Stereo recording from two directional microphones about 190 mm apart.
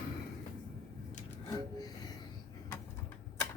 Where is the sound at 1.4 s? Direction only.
20° left (ahead or behind).